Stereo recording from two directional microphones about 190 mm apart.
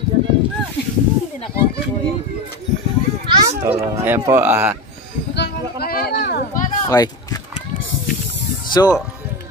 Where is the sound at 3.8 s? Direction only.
15° right (ahead or behind).